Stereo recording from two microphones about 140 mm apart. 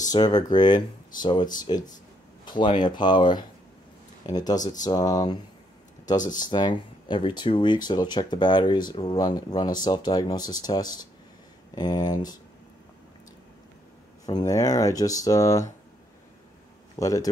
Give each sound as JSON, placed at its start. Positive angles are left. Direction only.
{"t": 0.1, "sound": "speech", "side_deg": 30}
{"t": 14.2, "sound": "speech", "side_deg": 25}
{"t": 16.9, "sound": "a man's voice", "side_deg": 25}